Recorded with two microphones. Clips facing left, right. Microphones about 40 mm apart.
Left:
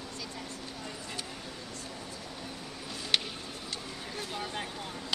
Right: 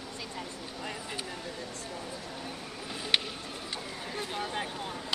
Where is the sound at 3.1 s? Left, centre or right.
Centre.